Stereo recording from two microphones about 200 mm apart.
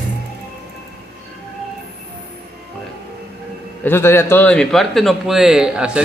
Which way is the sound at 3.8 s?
10° left (ahead or behind).